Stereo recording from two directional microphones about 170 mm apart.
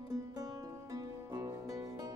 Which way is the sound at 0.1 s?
20° right (ahead or behind).